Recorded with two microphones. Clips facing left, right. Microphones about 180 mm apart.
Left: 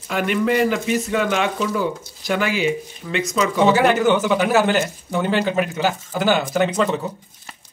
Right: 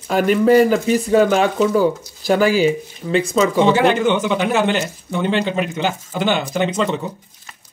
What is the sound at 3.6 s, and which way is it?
Speech, 5° left (ahead or behind).